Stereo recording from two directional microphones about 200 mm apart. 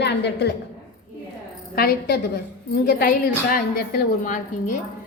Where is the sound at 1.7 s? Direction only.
50° left (ahead or behind).